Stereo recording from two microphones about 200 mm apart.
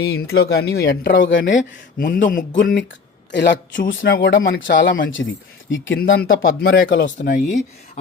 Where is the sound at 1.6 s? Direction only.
45° left (ahead or behind).